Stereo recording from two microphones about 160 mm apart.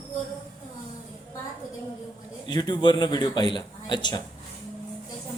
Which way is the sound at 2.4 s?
25° left (ahead or behind).